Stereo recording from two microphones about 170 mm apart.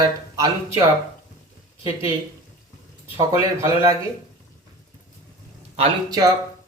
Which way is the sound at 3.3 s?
15° right (ahead or behind).